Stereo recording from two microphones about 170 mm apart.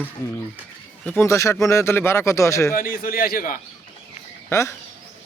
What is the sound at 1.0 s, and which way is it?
A man's voice, 15° left (ahead or behind).